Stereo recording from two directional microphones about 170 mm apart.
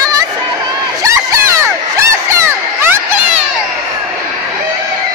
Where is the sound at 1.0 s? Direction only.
15° right (ahead or behind).